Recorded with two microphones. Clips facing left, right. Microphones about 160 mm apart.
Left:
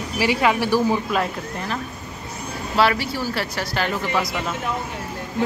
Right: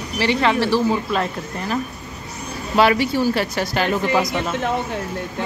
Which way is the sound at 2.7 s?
20° right (ahead or behind).